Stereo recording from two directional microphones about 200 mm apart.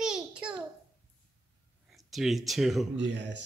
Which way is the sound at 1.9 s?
Centre (ahead or behind).